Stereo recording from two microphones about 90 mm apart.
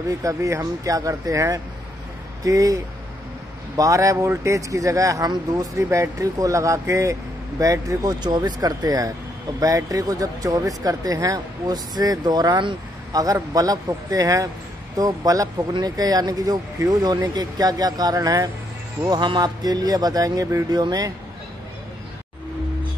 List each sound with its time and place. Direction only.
0.2 s speech: 35° right (ahead or behind)